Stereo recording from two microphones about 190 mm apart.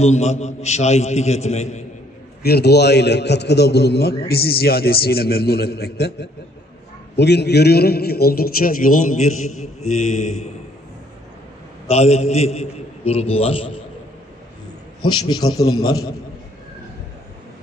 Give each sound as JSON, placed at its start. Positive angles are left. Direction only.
{"t": 0.0, "sound": "a man's voice", "side_deg": 35}
{"t": 2.4, "sound": "a man's voice", "side_deg": 60}
{"t": 11.9, "sound": "a man's voice", "side_deg": 35}
{"t": 15.0, "sound": "a man's voice", "side_deg": 25}